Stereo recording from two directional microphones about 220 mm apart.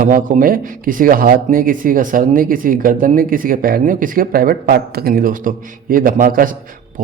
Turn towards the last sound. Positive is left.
turn(degrees=-35)  # may be behind; listen again after turning